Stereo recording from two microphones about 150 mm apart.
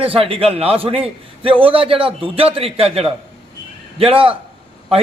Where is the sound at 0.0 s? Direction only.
40° right (ahead or behind).